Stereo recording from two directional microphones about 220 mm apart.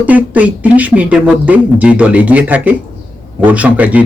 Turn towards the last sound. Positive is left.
turn(degrees=-5)  # may be behind; listen again after turning